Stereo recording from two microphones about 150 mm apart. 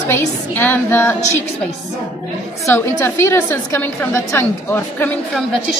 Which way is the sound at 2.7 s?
15° left (ahead or behind).